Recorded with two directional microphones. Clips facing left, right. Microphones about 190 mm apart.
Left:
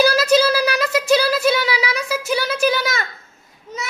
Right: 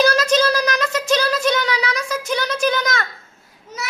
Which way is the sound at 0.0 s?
5° left (ahead or behind).